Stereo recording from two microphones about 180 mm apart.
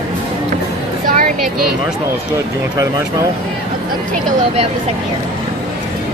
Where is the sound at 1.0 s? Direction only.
50° right (ahead or behind).